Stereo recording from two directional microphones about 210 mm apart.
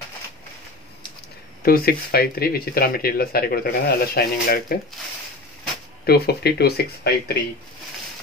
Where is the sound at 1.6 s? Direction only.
45° left (ahead or behind).